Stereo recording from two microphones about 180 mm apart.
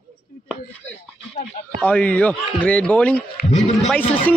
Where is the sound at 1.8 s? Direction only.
10° left (ahead or behind).